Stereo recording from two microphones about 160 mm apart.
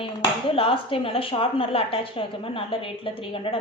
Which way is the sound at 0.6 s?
35° left (ahead or behind).